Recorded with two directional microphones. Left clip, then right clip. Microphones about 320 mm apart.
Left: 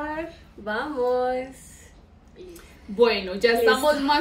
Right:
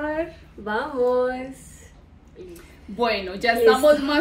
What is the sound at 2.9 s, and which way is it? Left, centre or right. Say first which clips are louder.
Speech: left 3 dB; centre.